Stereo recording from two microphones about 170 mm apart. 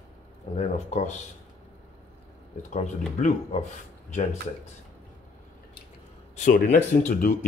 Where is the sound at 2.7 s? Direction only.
45° left (ahead or behind).